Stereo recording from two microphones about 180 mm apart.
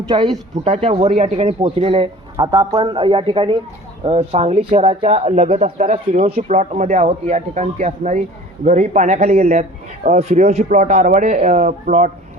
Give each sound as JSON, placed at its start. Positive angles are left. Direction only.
{"t": 0.1, "sound": "a man's voice", "side_deg": -25}
{"t": 2.3, "sound": "a man's voice", "side_deg": -20}